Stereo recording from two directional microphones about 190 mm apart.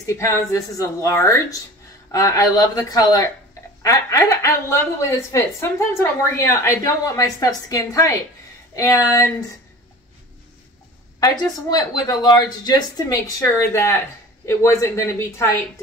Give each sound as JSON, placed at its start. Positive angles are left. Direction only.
{"t": 0.0, "sound": "a woman's voice", "side_deg": 15}
{"t": 11.1, "sound": "a woman's voice", "side_deg": 20}